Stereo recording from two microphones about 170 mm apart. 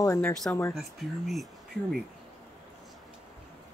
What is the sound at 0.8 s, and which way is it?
Speech, centre (ahead or behind).